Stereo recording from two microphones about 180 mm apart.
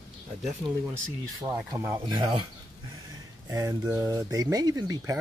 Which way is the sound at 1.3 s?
20° right (ahead or behind).